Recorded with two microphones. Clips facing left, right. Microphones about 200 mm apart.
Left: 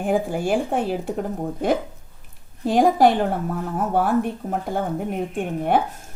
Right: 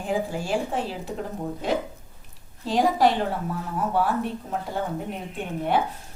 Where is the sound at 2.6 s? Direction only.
55° left (ahead or behind).